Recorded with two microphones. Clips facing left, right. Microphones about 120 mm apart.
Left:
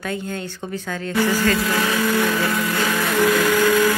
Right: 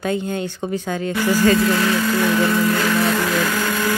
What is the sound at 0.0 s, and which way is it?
A woman's voice, 20° right (ahead or behind).